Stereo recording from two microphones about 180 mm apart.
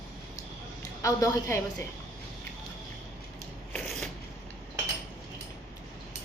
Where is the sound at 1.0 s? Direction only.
15° left (ahead or behind).